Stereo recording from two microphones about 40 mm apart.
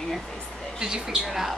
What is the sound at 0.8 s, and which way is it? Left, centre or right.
Speech, centre.